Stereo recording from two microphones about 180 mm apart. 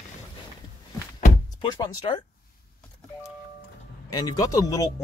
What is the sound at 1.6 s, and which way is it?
Speech, 25° left (ahead or behind).